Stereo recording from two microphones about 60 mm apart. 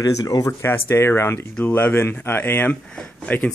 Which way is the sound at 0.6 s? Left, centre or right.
Left.